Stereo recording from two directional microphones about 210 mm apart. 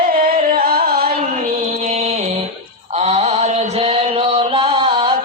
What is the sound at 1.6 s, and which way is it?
Music, 35° right (ahead or behind).